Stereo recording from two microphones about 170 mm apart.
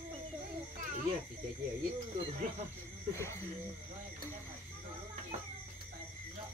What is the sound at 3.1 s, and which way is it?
Speech, 15° left (ahead or behind).